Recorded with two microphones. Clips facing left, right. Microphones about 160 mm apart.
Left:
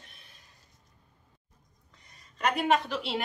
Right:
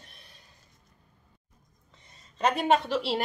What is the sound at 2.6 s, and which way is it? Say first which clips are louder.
Speech: right 2 dB; 30° right (ahead or behind).